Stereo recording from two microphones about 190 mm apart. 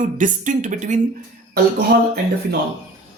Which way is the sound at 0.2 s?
40° right (ahead or behind).